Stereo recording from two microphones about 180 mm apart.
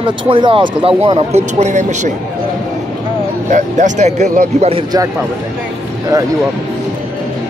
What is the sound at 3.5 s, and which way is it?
Speech, 40° right (ahead or behind).